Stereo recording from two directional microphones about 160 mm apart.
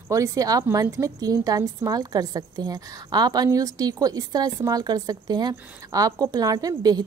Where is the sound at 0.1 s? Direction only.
20° right (ahead or behind).